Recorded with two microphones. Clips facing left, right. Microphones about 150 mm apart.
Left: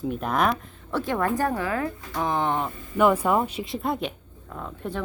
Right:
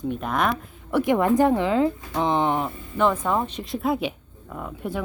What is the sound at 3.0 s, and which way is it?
Speech, 10° left (ahead or behind).